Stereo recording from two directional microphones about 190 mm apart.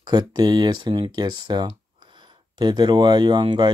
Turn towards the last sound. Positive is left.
turn(degrees=-25)  # may be behind; listen again after turning